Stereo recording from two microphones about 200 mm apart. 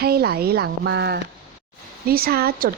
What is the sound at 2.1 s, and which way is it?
Speech, 50° right (ahead or behind).